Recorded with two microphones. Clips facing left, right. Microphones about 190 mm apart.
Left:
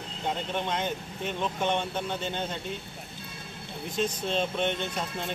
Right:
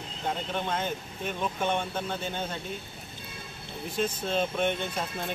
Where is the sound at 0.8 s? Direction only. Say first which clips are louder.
Left 1 dB; 10° right (ahead or behind).